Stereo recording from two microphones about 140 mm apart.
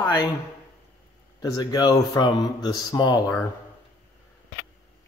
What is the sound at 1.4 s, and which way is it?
Speech, 30° left (ahead or behind).